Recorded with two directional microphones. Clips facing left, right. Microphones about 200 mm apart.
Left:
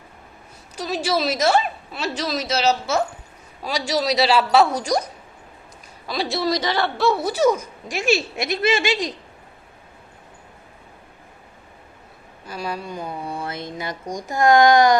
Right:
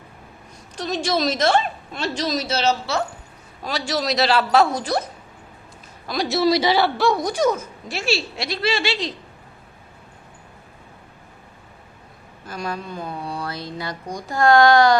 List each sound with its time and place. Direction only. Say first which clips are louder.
0.8 s speech: even; 5° left (ahead or behind)
2.3 s speech: even; 35° right (ahead or behind)
3.6 s speech: left 2 dB; 10° left (ahead or behind)
4.6 s a woman's voice: even; 10° right (ahead or behind)
6.1 s speech: right 4 dB; centre (ahead or behind); by 9.1 s 15° left (ahead or behind)
12.5 s speech: even; 5° left (ahead or behind)